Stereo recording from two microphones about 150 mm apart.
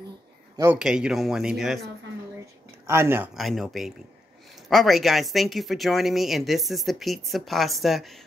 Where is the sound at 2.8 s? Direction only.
15° right (ahead or behind).